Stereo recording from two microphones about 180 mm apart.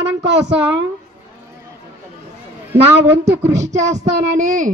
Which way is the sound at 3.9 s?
40° right (ahead or behind).